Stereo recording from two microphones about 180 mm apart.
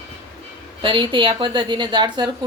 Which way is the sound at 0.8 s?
25° right (ahead or behind).